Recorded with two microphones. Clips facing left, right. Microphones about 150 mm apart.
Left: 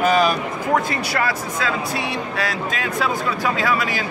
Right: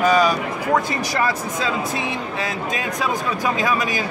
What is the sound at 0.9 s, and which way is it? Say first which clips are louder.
Speech: right 1 dB; 15° right (ahead or behind).